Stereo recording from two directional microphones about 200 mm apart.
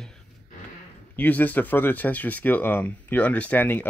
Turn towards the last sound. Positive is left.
turn(degrees=10)  # may be behind; listen again after turning